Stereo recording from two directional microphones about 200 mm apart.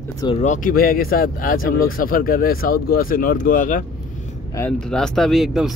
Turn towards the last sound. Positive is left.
turn(degrees=0)  # may be behind; listen again after turning